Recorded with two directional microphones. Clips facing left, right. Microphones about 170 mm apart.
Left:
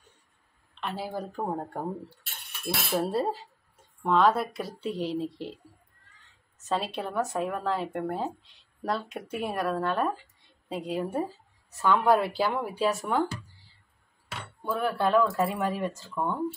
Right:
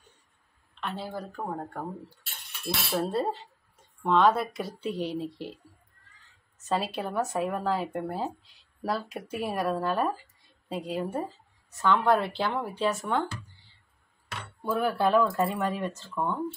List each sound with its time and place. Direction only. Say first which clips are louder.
0.7 s speech: left 1 dB; centre (ahead or behind)
1.1 s speech: left 3 dB; 20° left (ahead or behind)
2.8 s cutlery: left 1 dB; 15° left (ahead or behind)
3.1 s speech: left 1 dB; 5° left (ahead or behind)
6.6 s speech: right 1 dB; centre (ahead or behind)
14.3 s speech: right 2 dB; centre (ahead or behind)
16.2 s cutlery: even; 10° left (ahead or behind)